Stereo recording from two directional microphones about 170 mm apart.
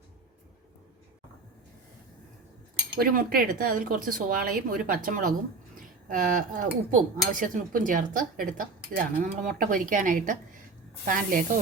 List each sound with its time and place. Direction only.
3.0 s speech: 60° right (ahead or behind)